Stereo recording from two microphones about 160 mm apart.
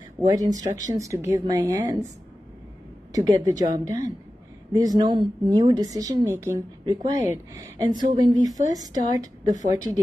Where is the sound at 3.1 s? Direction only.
20° right (ahead or behind).